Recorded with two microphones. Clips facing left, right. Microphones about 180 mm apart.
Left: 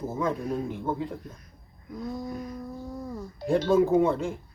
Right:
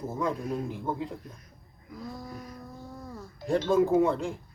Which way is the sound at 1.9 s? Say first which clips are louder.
Left 6 dB; 20° left (ahead or behind).